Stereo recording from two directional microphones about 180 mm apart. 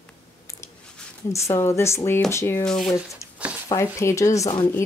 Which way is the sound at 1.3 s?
15° left (ahead or behind).